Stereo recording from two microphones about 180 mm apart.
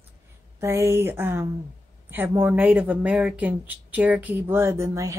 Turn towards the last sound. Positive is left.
turn(degrees=-15)  # may be behind; listen again after turning